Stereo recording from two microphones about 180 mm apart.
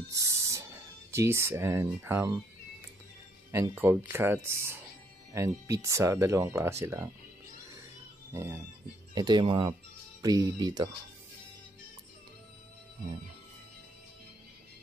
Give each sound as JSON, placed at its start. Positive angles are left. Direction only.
{"t": 0.1, "sound": "music", "side_deg": -15}
{"t": 1.1, "sound": "speech", "side_deg": -15}
{"t": 3.7, "sound": "speech", "side_deg": -10}
{"t": 8.3, "sound": "speech", "side_deg": -15}